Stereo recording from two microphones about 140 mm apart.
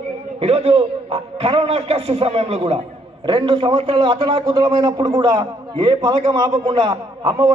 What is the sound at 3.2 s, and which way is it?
A man's voice, 35° right (ahead or behind).